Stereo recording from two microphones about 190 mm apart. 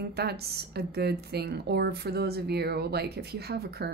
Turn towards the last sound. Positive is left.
turn(degrees=-60)  # may be behind; listen again after turning